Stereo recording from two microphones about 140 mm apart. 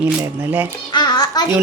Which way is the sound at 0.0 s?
20° right (ahead or behind).